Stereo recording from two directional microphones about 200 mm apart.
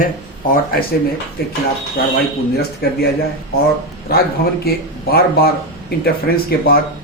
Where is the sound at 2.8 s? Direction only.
55° left (ahead or behind).